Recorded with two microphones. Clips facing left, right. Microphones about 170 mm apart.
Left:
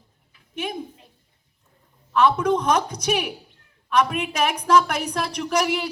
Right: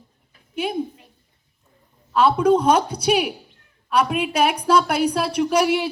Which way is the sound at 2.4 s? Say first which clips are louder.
Right 4 dB; 30° right (ahead or behind).